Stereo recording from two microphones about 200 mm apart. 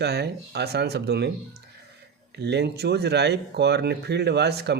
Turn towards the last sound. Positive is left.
turn(degrees=-55)  # may be behind; listen again after turning